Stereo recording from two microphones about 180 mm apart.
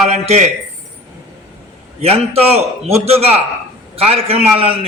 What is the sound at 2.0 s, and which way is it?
A man's voice, 35° right (ahead or behind).